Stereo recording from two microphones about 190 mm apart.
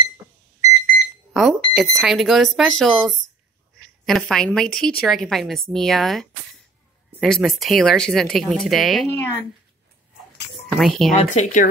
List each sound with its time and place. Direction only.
1.3 s a woman's voice: centre (ahead or behind)
9.1 s speech: 10° left (ahead or behind)
10.5 s a sound: centre (ahead or behind)
11.1 s speech: 35° left (ahead or behind)